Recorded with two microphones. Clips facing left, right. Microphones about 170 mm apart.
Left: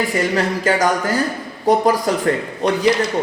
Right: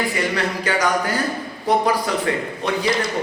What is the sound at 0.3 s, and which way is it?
Speech, 45° left (ahead or behind).